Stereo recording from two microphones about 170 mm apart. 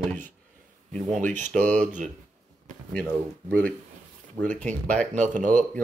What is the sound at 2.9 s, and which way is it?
Speech, 5° left (ahead or behind).